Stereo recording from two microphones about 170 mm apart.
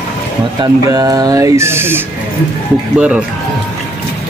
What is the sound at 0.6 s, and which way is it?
Speech, 20° right (ahead or behind).